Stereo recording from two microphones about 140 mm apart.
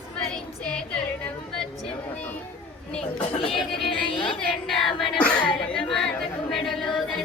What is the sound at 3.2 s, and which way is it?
Speech, 40° left (ahead or behind).